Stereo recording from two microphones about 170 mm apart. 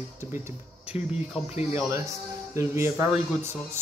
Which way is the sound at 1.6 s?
15° right (ahead or behind).